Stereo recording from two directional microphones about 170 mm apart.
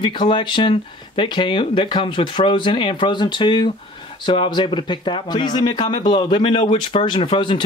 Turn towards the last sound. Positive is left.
turn(degrees=30)  # may be behind; listen again after turning